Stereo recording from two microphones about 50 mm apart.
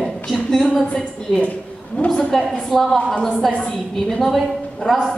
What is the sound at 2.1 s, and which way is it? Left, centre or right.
A woman's voice, centre.